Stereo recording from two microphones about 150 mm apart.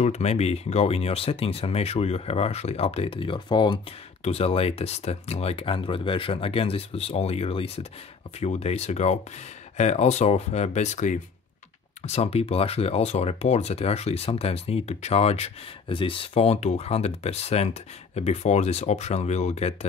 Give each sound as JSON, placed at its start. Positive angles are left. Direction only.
{"t": 0.0, "sound": "speech", "side_deg": 45}